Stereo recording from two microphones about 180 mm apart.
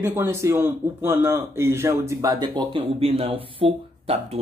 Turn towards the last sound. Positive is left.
turn(degrees=-35)  # may be behind; listen again after turning